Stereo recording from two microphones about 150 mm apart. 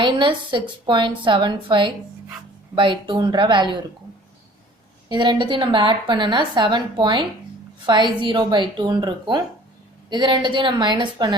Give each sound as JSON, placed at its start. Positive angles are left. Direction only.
{"t": 0.0, "sound": "a woman's voice", "side_deg": -30}
{"t": 5.0, "sound": "a woman's voice", "side_deg": -30}